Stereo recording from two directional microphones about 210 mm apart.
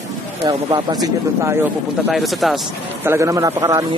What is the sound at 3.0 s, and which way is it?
Speech, 10° right (ahead or behind).